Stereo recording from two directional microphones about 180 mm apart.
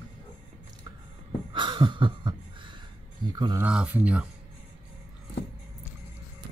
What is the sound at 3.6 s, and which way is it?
Speech, 5° right (ahead or behind).